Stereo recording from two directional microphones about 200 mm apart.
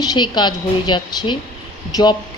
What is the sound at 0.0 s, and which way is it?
Speech, 20° left (ahead or behind).